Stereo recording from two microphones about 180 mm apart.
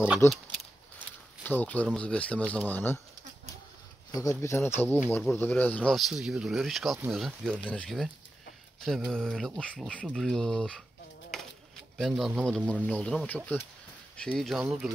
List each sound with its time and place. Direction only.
0.2 s speech: 15° left (ahead or behind)
1.4 s speech: 10° left (ahead or behind)
4.1 s speech: 20° left (ahead or behind)
12.0 s speech: centre (ahead or behind)